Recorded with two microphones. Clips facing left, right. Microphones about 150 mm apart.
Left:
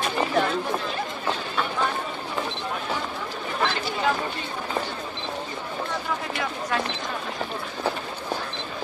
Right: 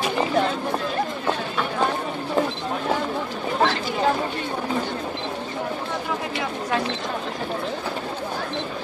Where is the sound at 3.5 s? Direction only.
35° right (ahead or behind).